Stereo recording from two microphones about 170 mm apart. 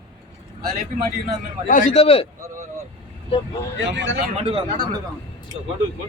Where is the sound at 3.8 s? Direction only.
90° right.